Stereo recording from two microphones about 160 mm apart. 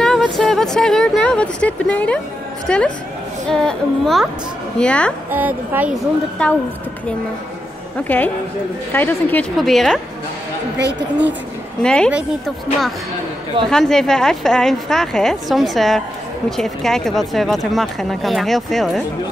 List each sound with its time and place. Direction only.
0.0 s speech: 5° left (ahead or behind)
5.3 s a woman's voice: 10° right (ahead or behind)
6.4 s speech: 5° left (ahead or behind)
8.1 s speech: 10° left (ahead or behind)
10.8 s a woman's voice: 90° right
11.8 s speech: 5° left (ahead or behind)